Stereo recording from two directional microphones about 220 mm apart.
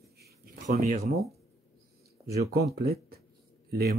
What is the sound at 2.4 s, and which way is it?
Speech, 45° right (ahead or behind).